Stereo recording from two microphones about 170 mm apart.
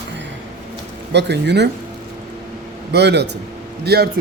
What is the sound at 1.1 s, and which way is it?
Speech, 90° right.